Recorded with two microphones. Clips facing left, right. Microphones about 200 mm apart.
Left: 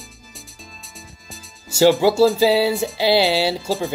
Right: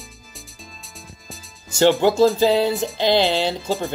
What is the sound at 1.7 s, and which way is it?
Music, 5° left (ahead or behind).